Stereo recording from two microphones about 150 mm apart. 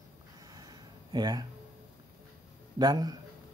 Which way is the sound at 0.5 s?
25° right (ahead or behind).